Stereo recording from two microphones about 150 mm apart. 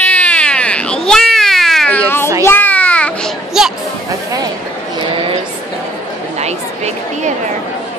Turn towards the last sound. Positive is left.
turn(degrees=-45)  # may be behind; listen again after turning